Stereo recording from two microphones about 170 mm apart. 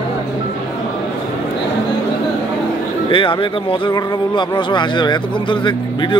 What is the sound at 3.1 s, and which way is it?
Speech, 30° left (ahead or behind).